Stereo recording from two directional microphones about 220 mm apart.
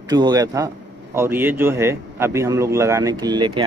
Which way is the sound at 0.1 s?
20° right (ahead or behind).